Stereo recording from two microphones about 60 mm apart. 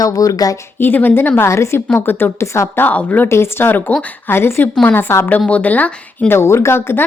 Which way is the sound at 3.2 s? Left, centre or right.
Left.